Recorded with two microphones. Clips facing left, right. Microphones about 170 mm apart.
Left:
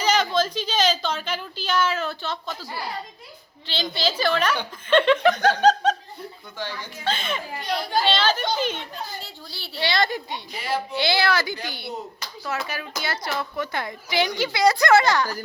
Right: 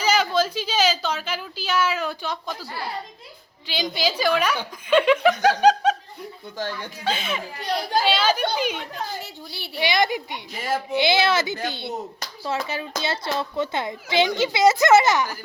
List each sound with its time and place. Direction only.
0.0 s a sound: 10° right (ahead or behind)
3.7 s a woman's voice: 10° right (ahead or behind)
6.6 s speech: 40° right (ahead or behind)
7.0 s a woman's voice: 10° right (ahead or behind)